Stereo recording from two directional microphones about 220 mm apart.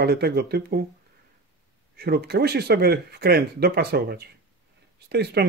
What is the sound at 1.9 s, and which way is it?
Speech, 45° right (ahead or behind).